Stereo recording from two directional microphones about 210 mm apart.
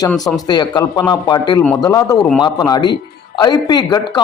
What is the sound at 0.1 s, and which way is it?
Speech, 5° left (ahead or behind).